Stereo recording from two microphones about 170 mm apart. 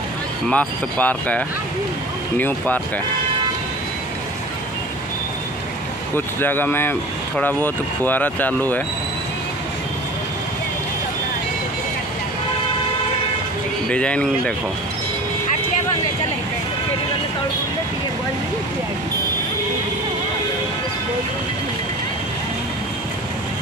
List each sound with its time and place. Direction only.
0.5 s speech: 10° left (ahead or behind)
6.1 s speech: 10° left (ahead or behind)
13.8 s speech: 5° left (ahead or behind)